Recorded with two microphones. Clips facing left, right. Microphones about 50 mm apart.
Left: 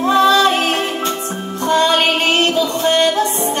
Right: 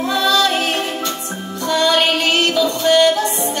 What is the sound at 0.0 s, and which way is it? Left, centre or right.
Music, left.